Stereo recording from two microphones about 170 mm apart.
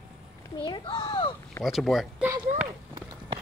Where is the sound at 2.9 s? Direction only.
25° right (ahead or behind).